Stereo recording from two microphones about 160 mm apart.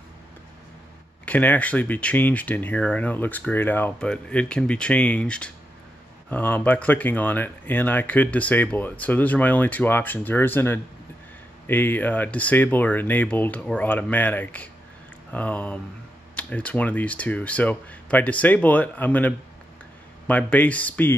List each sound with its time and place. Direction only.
1.2 s speech: 10° left (ahead or behind)